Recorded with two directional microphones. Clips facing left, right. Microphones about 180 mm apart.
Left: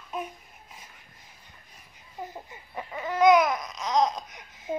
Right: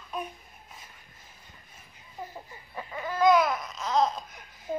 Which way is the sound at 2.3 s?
20° left (ahead or behind).